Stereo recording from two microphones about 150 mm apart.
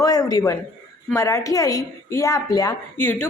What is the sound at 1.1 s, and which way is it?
A woman's voice, 20° left (ahead or behind).